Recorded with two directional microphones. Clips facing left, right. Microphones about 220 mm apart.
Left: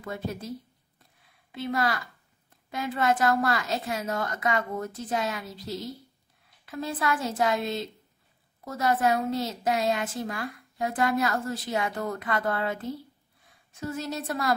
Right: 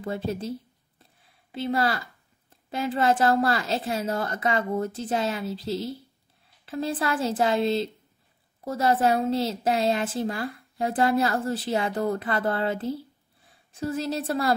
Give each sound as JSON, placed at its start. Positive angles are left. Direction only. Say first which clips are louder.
{"t": 0.0, "sound": "a woman's voice", "louder": "right 5 dB", "side_deg": -30}
{"t": 1.5, "sound": "a woman's voice", "louder": "right 3 dB", "side_deg": -30}